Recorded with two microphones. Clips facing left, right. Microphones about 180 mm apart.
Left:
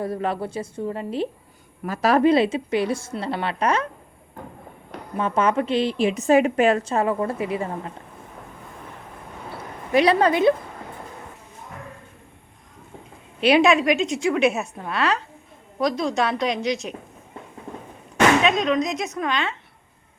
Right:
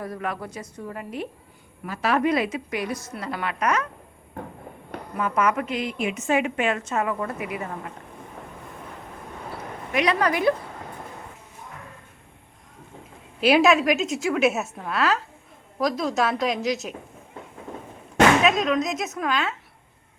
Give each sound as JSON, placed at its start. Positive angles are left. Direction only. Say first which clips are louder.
{"t": 0.0, "sound": "a woman's voice", "louder": "left 5 dB", "side_deg": 30}
{"t": 1.8, "sound": "a woman's voice", "louder": "left 5 dB", "side_deg": 40}
{"t": 5.1, "sound": "a woman's voice", "louder": "left 3 dB", "side_deg": 25}
{"t": 9.9, "sound": "a woman's voice", "louder": "left 5 dB", "side_deg": 30}
{"t": 13.4, "sound": "a woman's voice", "louder": "left 1 dB", "side_deg": 0}
{"t": 18.4, "sound": "a woman's voice", "louder": "left 1 dB", "side_deg": 0}